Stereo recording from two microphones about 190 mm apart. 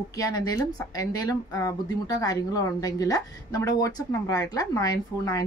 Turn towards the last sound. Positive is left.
turn(degrees=20)  # may be behind; listen again after turning